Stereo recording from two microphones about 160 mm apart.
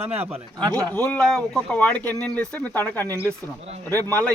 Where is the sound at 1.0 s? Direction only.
10° left (ahead or behind).